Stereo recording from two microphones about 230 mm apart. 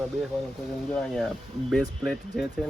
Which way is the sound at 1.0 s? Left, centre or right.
Centre.